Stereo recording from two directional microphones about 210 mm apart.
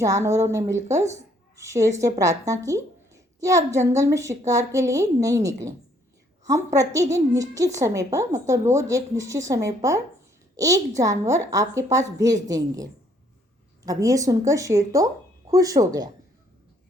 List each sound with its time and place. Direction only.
0.0 s a woman's voice: 15° right (ahead or behind)
11.0 s a woman's voice: 15° right (ahead or behind)